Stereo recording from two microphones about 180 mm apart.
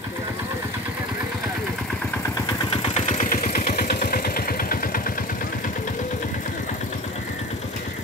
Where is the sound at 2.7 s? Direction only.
30° left (ahead or behind).